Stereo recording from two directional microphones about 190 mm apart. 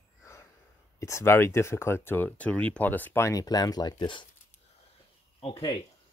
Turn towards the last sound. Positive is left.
turn(degrees=20)  # may be behind; listen again after turning